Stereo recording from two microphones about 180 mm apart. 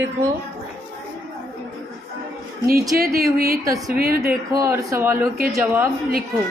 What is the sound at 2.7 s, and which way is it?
Speech, 55° right (ahead or behind).